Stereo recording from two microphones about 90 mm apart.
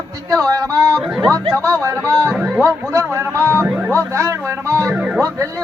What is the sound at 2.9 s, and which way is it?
Speech, 30° right (ahead or behind).